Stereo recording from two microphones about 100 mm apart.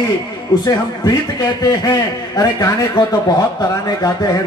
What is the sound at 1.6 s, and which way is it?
A man's voice, 40° left (ahead or behind).